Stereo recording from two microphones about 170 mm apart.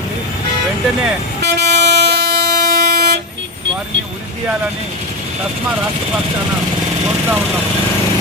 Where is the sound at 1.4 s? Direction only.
75° right (ahead or behind).